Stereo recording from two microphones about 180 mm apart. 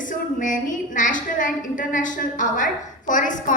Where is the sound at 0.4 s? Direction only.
45° left (ahead or behind).